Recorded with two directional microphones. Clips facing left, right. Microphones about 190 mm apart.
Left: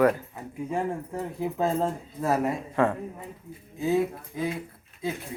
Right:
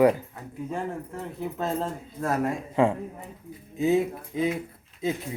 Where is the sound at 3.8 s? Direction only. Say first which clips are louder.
Right 2 dB; 20° right (ahead or behind).